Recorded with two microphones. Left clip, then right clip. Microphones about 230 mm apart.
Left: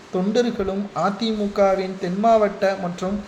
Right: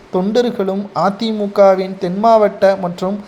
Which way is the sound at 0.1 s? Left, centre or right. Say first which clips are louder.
Right 6 dB; right.